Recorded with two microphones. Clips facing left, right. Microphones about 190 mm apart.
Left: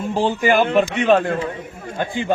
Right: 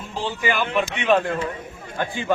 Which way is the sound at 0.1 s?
45° left (ahead or behind).